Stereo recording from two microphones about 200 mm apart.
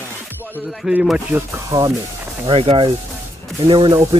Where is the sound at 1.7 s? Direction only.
15° right (ahead or behind).